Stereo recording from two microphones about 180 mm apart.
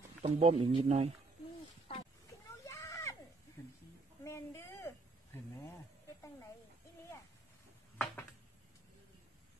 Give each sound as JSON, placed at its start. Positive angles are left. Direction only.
{"t": 0.2, "sound": "speech", "side_deg": -35}
{"t": 1.9, "sound": "roaring cats", "side_deg": 30}
{"t": 2.6, "sound": "a sound", "side_deg": 15}